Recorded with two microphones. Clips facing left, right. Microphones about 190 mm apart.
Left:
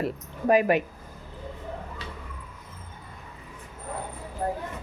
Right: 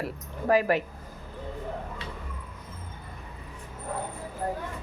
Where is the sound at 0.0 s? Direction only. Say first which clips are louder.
Left 4 dB; 20° left (ahead or behind).